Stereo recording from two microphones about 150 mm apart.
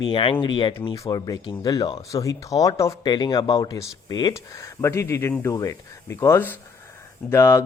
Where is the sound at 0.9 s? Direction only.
20° left (ahead or behind).